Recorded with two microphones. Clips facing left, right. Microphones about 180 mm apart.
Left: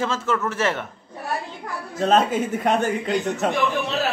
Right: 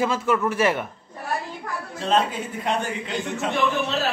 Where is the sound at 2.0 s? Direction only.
45° left (ahead or behind).